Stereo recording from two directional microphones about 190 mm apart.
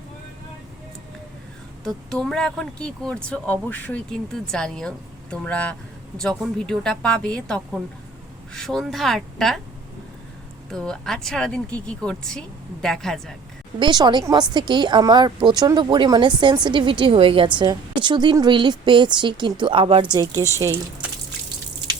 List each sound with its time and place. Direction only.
2.1 s speech: 5° left (ahead or behind)
10.7 s speech: centre (ahead or behind)
13.7 s a woman's voice: 25° right (ahead or behind)